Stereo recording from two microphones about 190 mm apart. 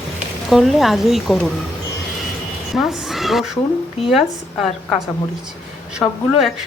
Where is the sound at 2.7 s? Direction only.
Centre (ahead or behind).